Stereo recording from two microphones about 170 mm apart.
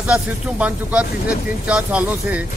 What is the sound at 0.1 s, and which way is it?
Speech, 10° right (ahead or behind).